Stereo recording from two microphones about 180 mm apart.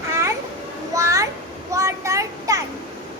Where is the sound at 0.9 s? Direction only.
15° right (ahead or behind).